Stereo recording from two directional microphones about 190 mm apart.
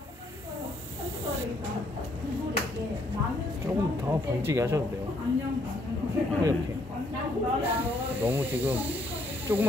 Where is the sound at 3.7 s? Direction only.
20° right (ahead or behind).